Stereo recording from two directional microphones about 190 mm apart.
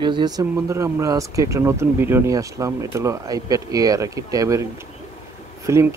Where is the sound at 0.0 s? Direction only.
25° right (ahead or behind).